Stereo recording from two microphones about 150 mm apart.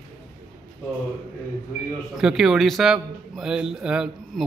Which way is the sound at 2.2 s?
5° right (ahead or behind).